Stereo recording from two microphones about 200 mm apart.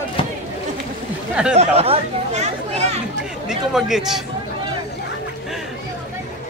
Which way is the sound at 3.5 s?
Centre (ahead or behind).